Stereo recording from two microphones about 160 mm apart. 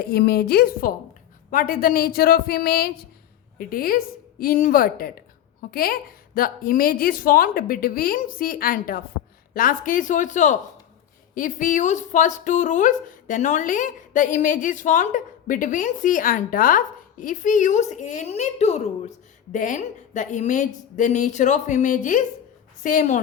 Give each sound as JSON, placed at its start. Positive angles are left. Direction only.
{"t": 0.0, "sound": "a woman's voice", "side_deg": 85}
{"t": 1.5, "sound": "a woman's voice", "side_deg": 60}